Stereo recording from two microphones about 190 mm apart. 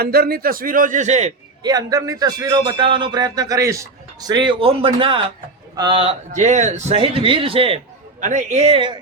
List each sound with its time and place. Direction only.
0.0 s a man's voice: 55° right (ahead or behind); by 1.3 s 35° right (ahead or behind)
1.6 s a man's voice: 20° right (ahead or behind)